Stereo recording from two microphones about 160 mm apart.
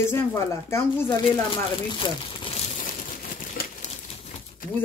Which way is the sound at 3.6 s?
75° left (ahead or behind).